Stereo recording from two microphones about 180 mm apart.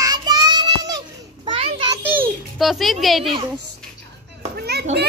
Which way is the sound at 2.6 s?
Centre (ahead or behind).